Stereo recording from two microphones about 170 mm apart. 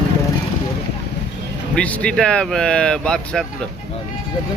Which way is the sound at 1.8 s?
5° left (ahead or behind).